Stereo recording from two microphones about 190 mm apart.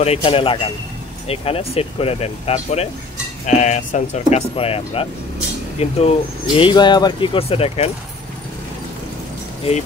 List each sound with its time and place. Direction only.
0.0 s speech: 30° left (ahead or behind)